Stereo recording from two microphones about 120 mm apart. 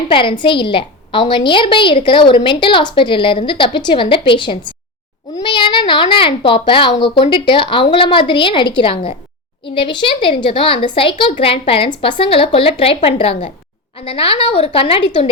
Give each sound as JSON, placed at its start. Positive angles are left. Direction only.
{"t": 0.1, "sound": "a woman's voice", "side_deg": 45}